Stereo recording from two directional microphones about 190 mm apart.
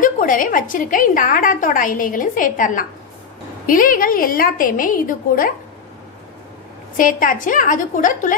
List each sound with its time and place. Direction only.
0.0 s a woman's voice: 45° left (ahead or behind)
7.0 s a woman's voice: 45° left (ahead or behind)